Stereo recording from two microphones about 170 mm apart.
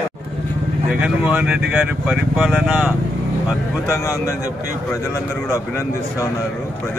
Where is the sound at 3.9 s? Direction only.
20° left (ahead or behind).